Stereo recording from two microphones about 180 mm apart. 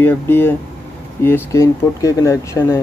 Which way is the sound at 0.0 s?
10° left (ahead or behind).